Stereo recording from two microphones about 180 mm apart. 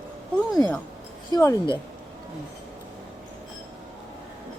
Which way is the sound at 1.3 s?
15° left (ahead or behind).